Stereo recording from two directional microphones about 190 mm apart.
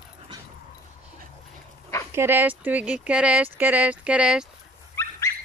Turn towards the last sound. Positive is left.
turn(degrees=15)  # may be behind; listen again after turning